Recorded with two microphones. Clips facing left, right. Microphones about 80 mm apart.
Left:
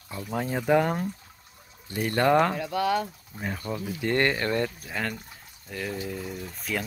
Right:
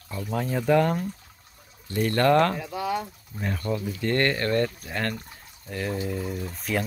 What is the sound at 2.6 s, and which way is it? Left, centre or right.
Speech, left.